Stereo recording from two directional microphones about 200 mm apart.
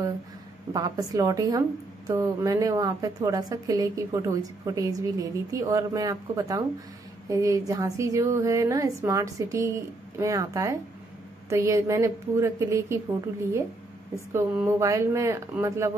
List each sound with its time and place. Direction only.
0.7 s a woman's voice: 20° right (ahead or behind)
14.3 s a woman's voice: 10° right (ahead or behind)